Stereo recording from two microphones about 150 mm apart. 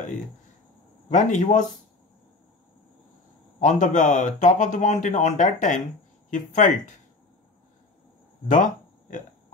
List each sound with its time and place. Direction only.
1.0 s speech: 55° left (ahead or behind)
3.6 s speech: 55° left (ahead or behind)
8.5 s speech: 60° left (ahead or behind)